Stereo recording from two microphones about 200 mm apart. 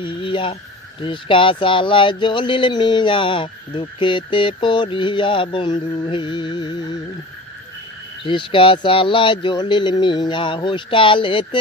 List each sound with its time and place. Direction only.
0.0 s speech: 25° left (ahead or behind)
8.2 s speech: 25° left (ahead or behind)